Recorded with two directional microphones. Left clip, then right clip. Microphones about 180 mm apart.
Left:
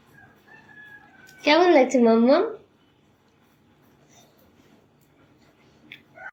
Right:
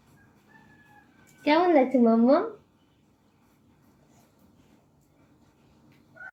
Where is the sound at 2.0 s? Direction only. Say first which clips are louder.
Left 3 dB; 15° right (ahead or behind).